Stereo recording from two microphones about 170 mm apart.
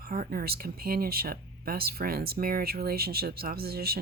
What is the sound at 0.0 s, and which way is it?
Speech, 60° right (ahead or behind).